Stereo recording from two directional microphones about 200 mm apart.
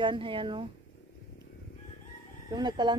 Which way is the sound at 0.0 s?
25° right (ahead or behind).